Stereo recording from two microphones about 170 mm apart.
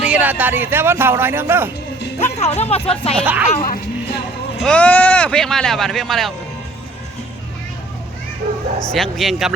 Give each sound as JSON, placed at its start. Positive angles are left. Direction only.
{"t": 0.0, "sound": "speech", "side_deg": -10}
{"t": 2.2, "sound": "speech", "side_deg": 40}
{"t": 3.2, "sound": "speech", "side_deg": -10}
{"t": 3.6, "sound": "music", "side_deg": 65}
{"t": 4.6, "sound": "speech", "side_deg": 5}
{"t": 8.9, "sound": "speech", "side_deg": 0}